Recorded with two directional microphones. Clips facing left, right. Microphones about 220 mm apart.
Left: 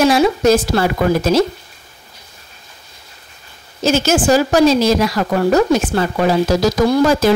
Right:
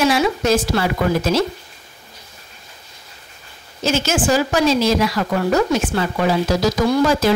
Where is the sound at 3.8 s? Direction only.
40° left (ahead or behind).